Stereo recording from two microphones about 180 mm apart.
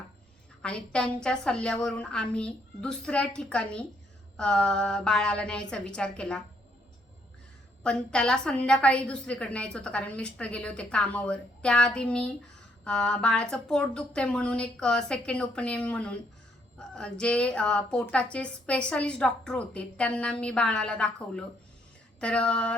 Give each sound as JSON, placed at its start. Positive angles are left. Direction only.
{"t": 0.6, "sound": "a woman's voice", "side_deg": 5}
{"t": 7.9, "sound": "a woman's voice", "side_deg": 5}